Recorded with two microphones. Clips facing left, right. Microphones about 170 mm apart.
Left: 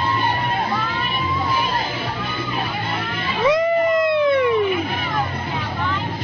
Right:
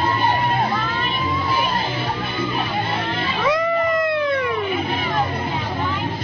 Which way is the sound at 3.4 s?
20° left (ahead or behind).